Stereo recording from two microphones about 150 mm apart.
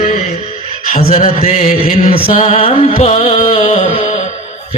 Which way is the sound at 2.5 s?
40° left (ahead or behind).